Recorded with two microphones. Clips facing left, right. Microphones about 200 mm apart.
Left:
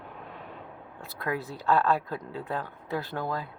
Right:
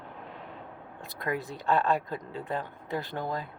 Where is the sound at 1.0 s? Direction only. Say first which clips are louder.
Even; 15° right (ahead or behind).